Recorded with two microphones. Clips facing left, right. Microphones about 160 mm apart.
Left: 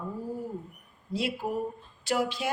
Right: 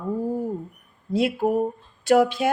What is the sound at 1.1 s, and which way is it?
A woman's voice, 55° right (ahead or behind).